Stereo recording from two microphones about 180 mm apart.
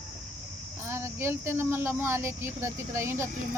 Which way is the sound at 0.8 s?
15° right (ahead or behind).